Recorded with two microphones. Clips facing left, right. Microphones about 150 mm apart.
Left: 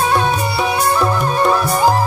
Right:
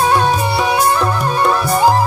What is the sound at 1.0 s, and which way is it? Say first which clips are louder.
Music: even; centre (ahead or behind).